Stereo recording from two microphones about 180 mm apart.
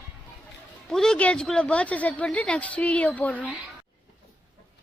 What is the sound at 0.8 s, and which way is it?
Speech, 5° left (ahead or behind).